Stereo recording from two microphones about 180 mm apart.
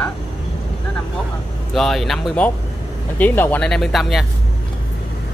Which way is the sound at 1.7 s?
Centre (ahead or behind).